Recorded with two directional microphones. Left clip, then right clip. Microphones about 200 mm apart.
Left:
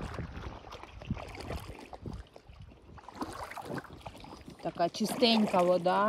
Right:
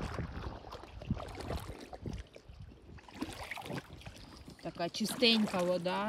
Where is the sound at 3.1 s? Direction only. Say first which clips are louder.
Left 3 dB; 40° right (ahead or behind).